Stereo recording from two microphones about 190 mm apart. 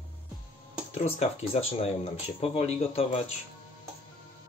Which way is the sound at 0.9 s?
35° left (ahead or behind).